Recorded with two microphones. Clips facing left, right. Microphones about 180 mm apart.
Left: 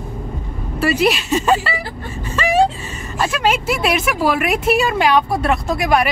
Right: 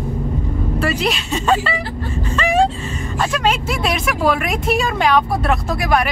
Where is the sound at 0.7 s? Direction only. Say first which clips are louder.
Left 5 dB; 5° left (ahead or behind).